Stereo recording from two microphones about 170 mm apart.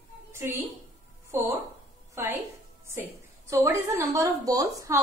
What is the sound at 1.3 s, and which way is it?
A woman's voice, 15° right (ahead or behind).